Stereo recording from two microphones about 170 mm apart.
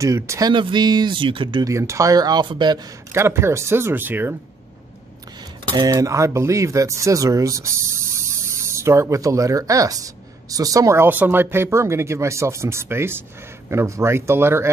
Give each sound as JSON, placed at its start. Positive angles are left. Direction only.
{"t": 0.0, "sound": "speech", "side_deg": -20}
{"t": 3.1, "sound": "speech", "side_deg": -15}
{"t": 5.8, "sound": "speech", "side_deg": -20}